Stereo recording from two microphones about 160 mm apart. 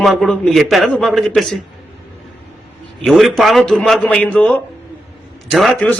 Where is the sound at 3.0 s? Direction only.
Centre (ahead or behind).